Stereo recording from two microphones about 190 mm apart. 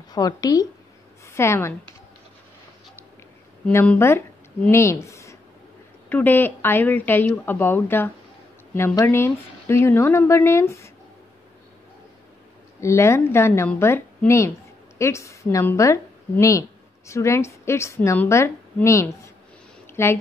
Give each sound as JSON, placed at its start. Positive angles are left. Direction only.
{"t": 0.1, "sound": "a woman's voice", "side_deg": 20}
{"t": 3.6, "sound": "speech", "side_deg": 5}
{"t": 12.8, "sound": "a woman's voice", "side_deg": 15}